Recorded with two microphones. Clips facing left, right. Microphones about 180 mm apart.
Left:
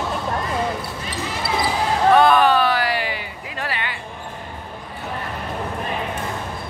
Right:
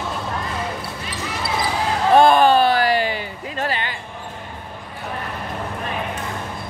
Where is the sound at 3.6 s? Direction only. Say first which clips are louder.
Right 4 dB; 30° right (ahead or behind).